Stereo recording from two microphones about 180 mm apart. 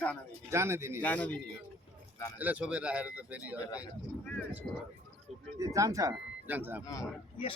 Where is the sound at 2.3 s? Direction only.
10° right (ahead or behind).